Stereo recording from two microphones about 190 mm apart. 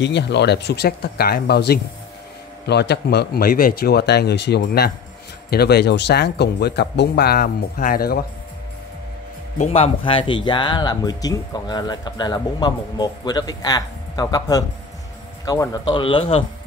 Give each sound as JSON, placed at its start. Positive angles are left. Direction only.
{"t": 0.0, "sound": "speech", "side_deg": 65}
{"t": 9.6, "sound": "speech", "side_deg": 30}